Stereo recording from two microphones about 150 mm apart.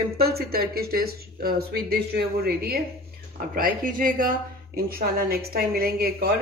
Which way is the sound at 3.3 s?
70° right (ahead or behind).